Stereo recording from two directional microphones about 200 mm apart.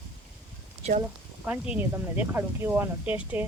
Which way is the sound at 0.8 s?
30° right (ahead or behind).